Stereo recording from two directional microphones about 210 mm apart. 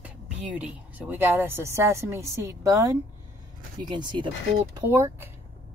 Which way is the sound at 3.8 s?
20° right (ahead or behind).